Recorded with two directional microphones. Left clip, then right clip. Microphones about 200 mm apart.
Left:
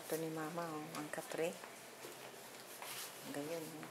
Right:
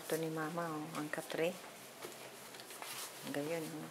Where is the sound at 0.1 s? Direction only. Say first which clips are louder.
Right 3 dB; 10° right (ahead or behind).